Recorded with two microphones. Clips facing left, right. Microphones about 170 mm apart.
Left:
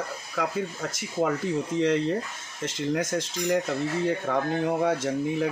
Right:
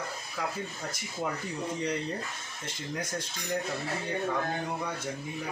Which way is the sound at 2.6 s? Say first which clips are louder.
Left 10 dB; 90° left.